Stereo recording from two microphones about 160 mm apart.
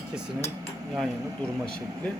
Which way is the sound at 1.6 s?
5° left (ahead or behind).